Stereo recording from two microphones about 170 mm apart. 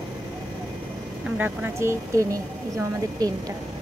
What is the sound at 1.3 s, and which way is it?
Speech, 10° right (ahead or behind).